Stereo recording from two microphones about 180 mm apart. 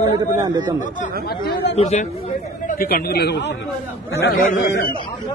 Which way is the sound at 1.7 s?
40° left (ahead or behind).